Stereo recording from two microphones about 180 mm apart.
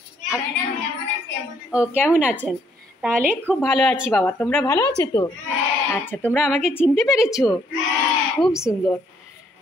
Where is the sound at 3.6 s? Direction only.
Centre (ahead or behind).